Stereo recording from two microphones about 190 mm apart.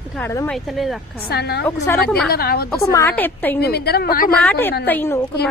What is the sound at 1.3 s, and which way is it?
A woman's voice, 60° left (ahead or behind).